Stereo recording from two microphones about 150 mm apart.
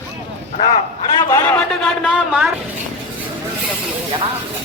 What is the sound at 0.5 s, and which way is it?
Speech, 40° left (ahead or behind).